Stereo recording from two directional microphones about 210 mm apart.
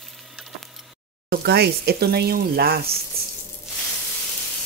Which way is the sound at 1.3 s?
50° right (ahead or behind).